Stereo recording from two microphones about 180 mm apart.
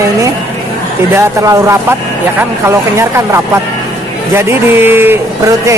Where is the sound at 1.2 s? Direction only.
15° right (ahead or behind).